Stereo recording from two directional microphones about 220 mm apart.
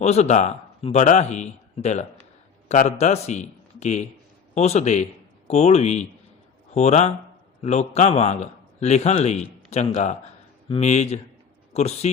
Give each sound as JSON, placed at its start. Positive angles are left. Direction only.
{"t": 0.0, "sound": "a man's voice", "side_deg": 30}